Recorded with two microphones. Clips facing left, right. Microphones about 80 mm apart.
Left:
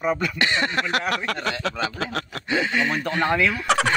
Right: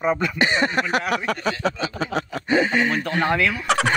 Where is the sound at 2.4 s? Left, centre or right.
Right.